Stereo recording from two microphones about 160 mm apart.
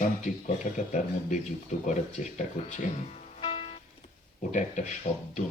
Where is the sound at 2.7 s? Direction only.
45° left (ahead or behind).